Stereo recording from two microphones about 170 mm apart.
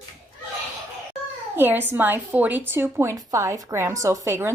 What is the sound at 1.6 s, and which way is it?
A woman's voice, 10° right (ahead or behind).